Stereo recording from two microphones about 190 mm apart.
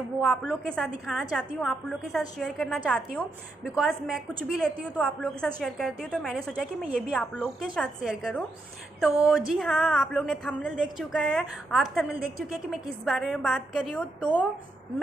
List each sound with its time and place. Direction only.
0.2 s speech: 5° right (ahead or behind)